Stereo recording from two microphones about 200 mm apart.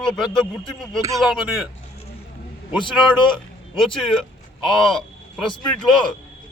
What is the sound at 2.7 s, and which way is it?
Speech, 25° left (ahead or behind).